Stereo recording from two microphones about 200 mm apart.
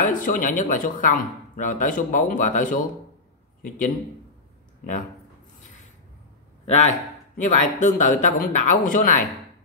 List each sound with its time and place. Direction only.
0.0 s speech: 40° left (ahead or behind)
6.6 s a man's voice: 35° left (ahead or behind)